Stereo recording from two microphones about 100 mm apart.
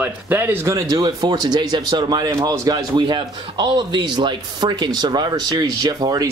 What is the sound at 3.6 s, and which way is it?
Speech, 50° right (ahead or behind).